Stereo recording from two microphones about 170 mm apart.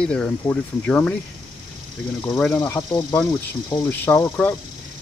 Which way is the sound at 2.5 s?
15° left (ahead or behind).